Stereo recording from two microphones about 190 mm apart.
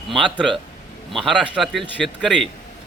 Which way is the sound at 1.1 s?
Centre (ahead or behind).